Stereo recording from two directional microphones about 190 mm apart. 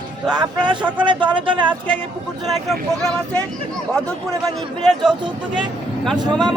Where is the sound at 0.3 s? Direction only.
25° right (ahead or behind).